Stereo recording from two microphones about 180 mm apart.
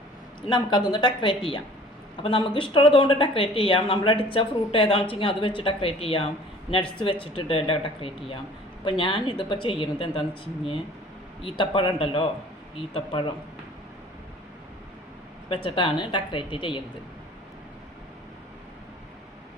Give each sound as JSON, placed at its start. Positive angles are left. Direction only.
{"t": 0.5, "sound": "a woman's voice", "side_deg": 25}
{"t": 11.4, "sound": "a woman's voice", "side_deg": 25}
{"t": 15.4, "sound": "a woman's voice", "side_deg": 30}